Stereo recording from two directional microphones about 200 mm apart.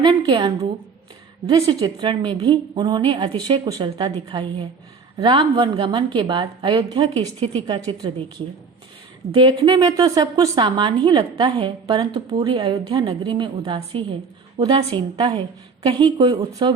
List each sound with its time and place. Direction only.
0.0 s a woman's voice: 25° right (ahead or behind)
9.3 s a woman's voice: 25° right (ahead or behind)